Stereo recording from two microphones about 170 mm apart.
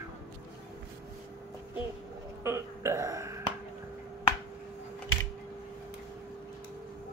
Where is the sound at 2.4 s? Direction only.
15° right (ahead or behind).